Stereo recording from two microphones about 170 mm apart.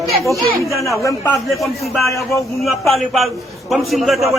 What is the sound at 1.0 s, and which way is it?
A man's voice, 20° left (ahead or behind).